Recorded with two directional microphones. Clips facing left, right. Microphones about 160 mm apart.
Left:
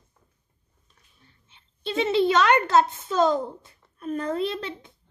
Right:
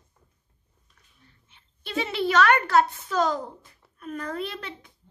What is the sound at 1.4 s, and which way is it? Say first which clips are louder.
A woman's voice: left 8 dB; 25° left (ahead or behind).